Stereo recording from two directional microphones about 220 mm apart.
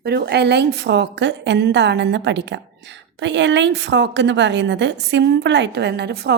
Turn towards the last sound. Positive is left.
turn(degrees=-50)  # may be behind; listen again after turning